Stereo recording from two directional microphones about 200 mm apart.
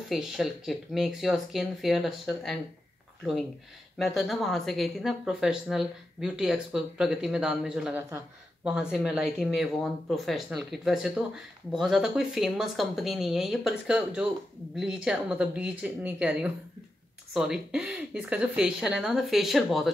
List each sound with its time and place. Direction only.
0.1 s speech: centre (ahead or behind)
4.0 s speech: centre (ahead or behind)